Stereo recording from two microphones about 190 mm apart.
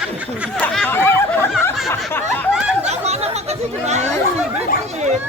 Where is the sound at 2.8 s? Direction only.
35° right (ahead or behind).